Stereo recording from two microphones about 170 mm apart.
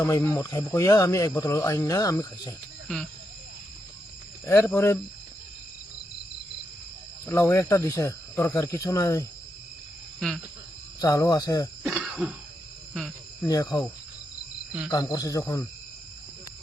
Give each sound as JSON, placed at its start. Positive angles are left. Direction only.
{"t": 0.0, "sound": "speech", "side_deg": 15}
{"t": 2.8, "sound": "speech", "side_deg": 5}
{"t": 4.4, "sound": "speech", "side_deg": 15}
{"t": 7.3, "sound": "speech", "side_deg": 15}
{"t": 10.2, "sound": "speech", "side_deg": 0}
{"t": 11.0, "sound": "speech", "side_deg": 20}
{"t": 11.8, "sound": "throat clearing", "side_deg": -5}
{"t": 12.9, "sound": "cricket", "side_deg": 0}
{"t": 13.5, "sound": "speech", "side_deg": 20}
{"t": 14.8, "sound": "speech", "side_deg": 20}